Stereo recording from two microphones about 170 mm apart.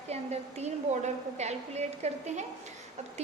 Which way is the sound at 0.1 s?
40° right (ahead or behind).